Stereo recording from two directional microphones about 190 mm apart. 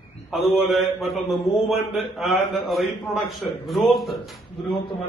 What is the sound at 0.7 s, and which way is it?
Speech, centre (ahead or behind).